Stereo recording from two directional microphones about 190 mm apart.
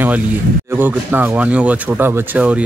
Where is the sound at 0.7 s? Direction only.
10° right (ahead or behind).